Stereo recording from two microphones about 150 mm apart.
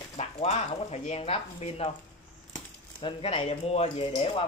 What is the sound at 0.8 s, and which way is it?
Speech, 45° left (ahead or behind).